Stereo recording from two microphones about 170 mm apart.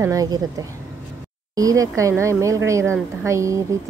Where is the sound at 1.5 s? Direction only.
20° right (ahead or behind).